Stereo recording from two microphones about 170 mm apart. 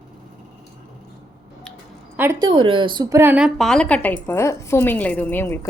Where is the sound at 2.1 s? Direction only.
15° right (ahead or behind).